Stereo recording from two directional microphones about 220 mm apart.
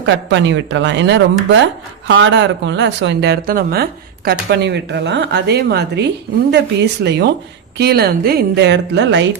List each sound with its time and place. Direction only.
0.0 s speech: 55° right (ahead or behind)